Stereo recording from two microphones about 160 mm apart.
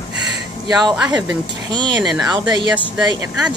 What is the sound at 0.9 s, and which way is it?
Speech, 5° right (ahead or behind).